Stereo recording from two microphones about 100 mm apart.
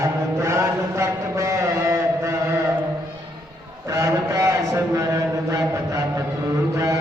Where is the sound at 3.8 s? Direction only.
30° right (ahead or behind).